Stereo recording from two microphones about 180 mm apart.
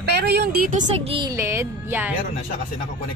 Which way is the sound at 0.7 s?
45° right (ahead or behind).